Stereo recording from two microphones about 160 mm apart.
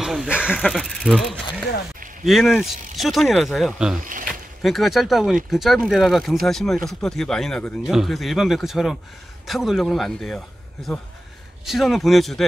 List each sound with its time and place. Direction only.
0.0 s speech: 5° right (ahead or behind)
4.0 s speech: 55° right (ahead or behind)
4.6 s speech: centre (ahead or behind)